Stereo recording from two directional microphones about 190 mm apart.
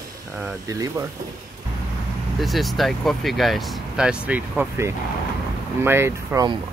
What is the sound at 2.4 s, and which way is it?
Speech, centre (ahead or behind).